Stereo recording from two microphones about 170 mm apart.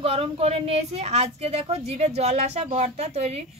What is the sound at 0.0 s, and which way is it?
A woman's voice, 35° right (ahead or behind).